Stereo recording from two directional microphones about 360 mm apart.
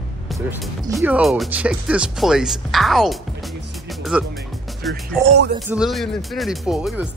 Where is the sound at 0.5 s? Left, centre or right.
Centre.